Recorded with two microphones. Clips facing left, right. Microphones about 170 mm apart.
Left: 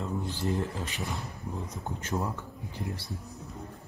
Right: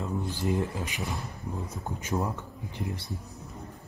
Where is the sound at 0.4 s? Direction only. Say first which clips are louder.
Right 3 dB; 15° right (ahead or behind).